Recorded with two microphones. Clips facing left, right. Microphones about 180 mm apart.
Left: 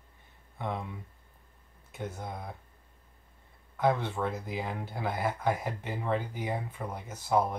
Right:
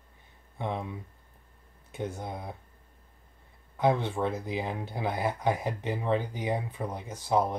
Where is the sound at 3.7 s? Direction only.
20° right (ahead or behind).